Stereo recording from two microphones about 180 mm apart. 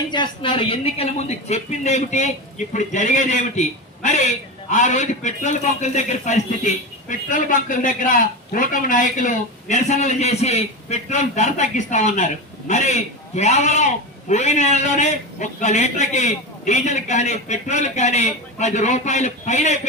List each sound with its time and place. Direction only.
0.1 s a man's voice: 25° left (ahead or behind); by 19.7 s 40° left (ahead or behind)